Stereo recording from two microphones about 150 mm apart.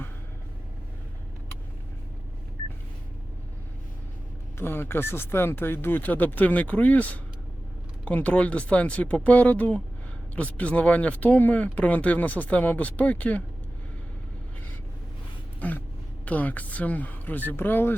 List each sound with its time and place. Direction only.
4.5 s speech: 15° left (ahead or behind)
15.6 s speech: 10° left (ahead or behind)